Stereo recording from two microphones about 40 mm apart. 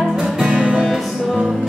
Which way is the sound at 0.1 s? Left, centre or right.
Centre.